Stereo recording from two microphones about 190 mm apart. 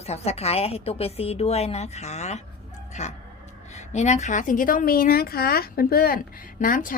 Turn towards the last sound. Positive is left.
turn(degrees=45)  # may be behind; listen again after turning